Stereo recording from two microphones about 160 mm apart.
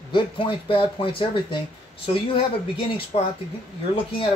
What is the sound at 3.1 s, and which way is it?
Speech, 35° left (ahead or behind).